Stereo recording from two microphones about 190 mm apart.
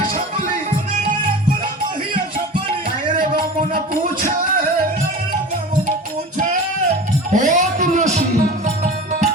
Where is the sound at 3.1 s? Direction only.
50° right (ahead or behind).